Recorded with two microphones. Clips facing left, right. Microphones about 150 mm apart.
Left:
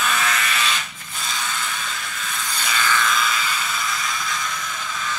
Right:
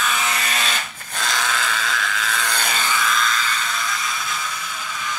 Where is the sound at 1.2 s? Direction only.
90° right.